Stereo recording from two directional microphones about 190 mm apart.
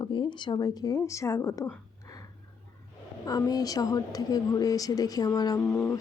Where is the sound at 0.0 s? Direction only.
25° left (ahead or behind).